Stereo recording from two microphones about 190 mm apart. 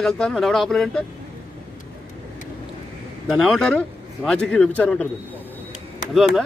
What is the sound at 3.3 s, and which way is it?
A man's voice, centre (ahead or behind).